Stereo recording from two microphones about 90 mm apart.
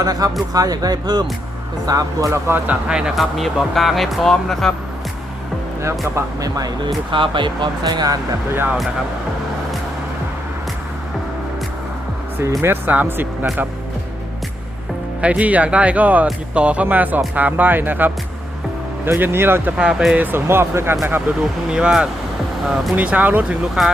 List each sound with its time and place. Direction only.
0.0 s speech: 45° right (ahead or behind)
2.6 s speech: 10° right (ahead or behind)
6.1 s speech: 45° right (ahead or behind)
6.8 s speech: 65° right (ahead or behind); by 8.2 s 45° right (ahead or behind)
12.4 s speech: 30° right (ahead or behind)
15.2 s speech: 15° right (ahead or behind)
19.7 s speech: 10° right (ahead or behind)
20.1 s speech: 25° right (ahead or behind)
21.7 s speech: 10° right (ahead or behind)
23.8 s speech: 5° right (ahead or behind)